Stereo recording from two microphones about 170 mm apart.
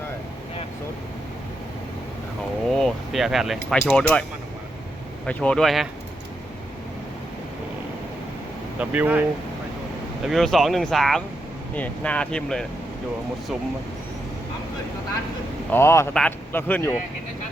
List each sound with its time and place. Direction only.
2.6 s speech: centre (ahead or behind)
5.2 s speech: 5° left (ahead or behind)
8.8 s speech: 10° right (ahead or behind)
10.2 s speech: centre (ahead or behind)
15.7 s speech: 15° left (ahead or behind)